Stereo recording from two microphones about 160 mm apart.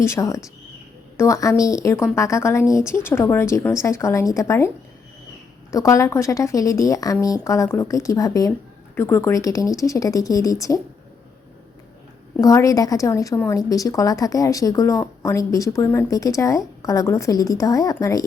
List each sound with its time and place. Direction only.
0.0 s speech: 20° left (ahead or behind)
5.7 s speech: 20° left (ahead or behind)
12.4 s speech: 20° left (ahead or behind)